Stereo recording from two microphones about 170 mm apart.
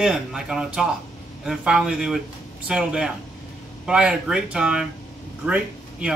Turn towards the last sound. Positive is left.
turn(degrees=-5)  # may be behind; listen again after turning